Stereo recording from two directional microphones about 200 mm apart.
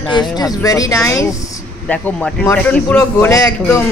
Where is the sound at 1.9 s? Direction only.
5° left (ahead or behind).